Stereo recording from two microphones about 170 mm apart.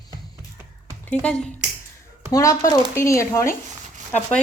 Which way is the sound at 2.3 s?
20° left (ahead or behind).